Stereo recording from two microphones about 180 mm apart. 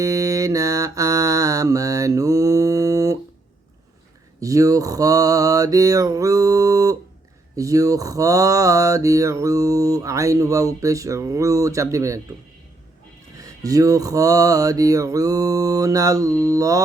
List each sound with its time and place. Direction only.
0.0 s mantra: 20° right (ahead or behind)
4.4 s mantra: 20° right (ahead or behind)
13.4 s mantra: 20° right (ahead or behind)